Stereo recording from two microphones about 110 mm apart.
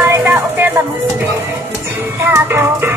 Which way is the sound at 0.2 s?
15° right (ahead or behind).